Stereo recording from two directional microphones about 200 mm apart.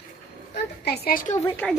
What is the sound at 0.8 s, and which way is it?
Speech, 50° left (ahead or behind).